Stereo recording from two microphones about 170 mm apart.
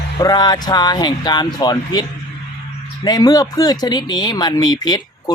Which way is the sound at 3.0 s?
20° left (ahead or behind).